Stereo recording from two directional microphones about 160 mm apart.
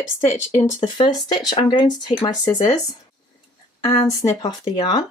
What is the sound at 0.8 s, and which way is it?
Speech, 25° left (ahead or behind).